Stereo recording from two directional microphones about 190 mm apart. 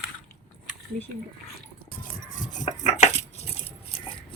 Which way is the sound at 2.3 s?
40° left (ahead or behind).